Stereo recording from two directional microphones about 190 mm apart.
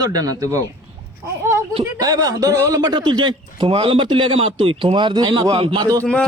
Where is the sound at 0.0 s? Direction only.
20° right (ahead or behind).